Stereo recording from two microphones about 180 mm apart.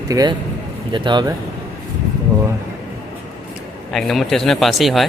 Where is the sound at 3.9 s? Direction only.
Centre (ahead or behind).